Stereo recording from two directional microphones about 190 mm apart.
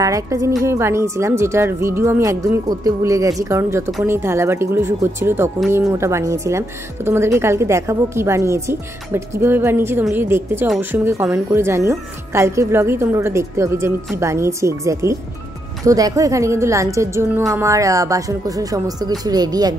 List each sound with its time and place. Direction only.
0.0 s a woman's voice: 15° right (ahead or behind)